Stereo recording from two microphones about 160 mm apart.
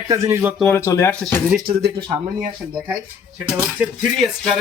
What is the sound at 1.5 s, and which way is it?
Speech, 65° right (ahead or behind).